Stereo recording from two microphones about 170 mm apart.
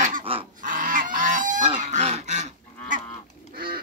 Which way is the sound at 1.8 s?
45° right (ahead or behind).